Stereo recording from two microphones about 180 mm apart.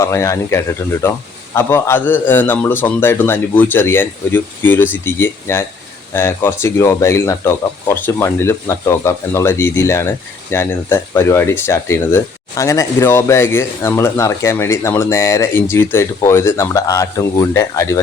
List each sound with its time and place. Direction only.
0.0 s speech: 15° left (ahead or behind)